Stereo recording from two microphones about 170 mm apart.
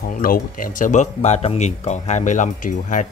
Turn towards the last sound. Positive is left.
turn(degrees=50)  # may be behind; listen again after turning